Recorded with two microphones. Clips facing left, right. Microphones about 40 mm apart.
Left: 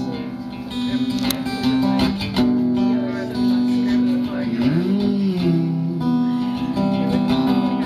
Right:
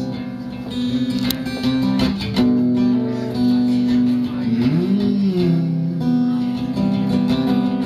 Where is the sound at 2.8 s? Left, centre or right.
Centre.